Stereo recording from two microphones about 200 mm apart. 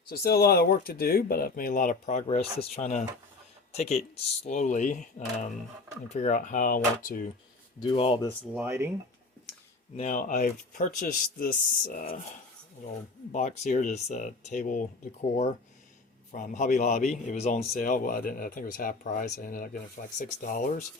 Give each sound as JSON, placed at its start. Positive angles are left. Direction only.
{"t": 0.1, "sound": "speech", "side_deg": 50}
{"t": 2.2, "sound": "a man's voice", "side_deg": 30}
{"t": 7.8, "sound": "speech", "side_deg": 25}
{"t": 8.5, "sound": "speech", "side_deg": -10}
{"t": 10.0, "sound": "a man's voice", "side_deg": 40}
{"t": 13.3, "sound": "a man's voice", "side_deg": 35}